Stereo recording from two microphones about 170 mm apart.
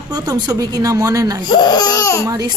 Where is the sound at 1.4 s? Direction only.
25° left (ahead or behind).